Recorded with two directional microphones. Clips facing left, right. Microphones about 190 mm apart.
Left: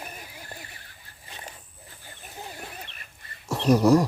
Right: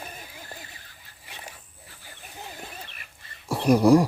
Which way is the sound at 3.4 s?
10° right (ahead or behind).